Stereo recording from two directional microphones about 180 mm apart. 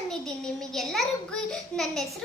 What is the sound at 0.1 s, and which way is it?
A child's voice, 5° left (ahead or behind).